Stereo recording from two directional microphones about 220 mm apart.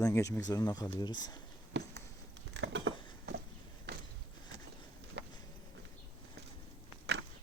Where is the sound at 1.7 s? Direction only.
50° right (ahead or behind).